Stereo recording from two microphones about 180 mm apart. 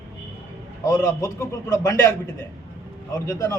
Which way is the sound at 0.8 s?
15° left (ahead or behind).